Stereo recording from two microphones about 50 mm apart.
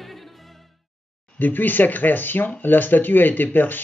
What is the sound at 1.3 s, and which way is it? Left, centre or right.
Speech, left.